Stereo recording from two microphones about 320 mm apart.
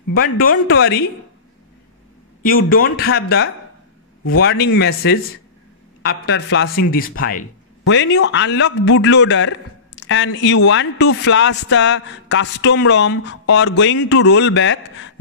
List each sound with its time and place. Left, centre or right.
0.1 s speech: left
0.7 s a man's voice: left
2.4 s speech: left
3.1 s a man's voice: left
6.9 s a man's voice: left